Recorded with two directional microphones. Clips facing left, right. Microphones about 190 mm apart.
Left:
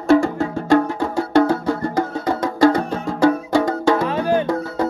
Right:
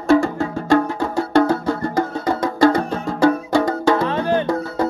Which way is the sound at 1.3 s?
15° left (ahead or behind).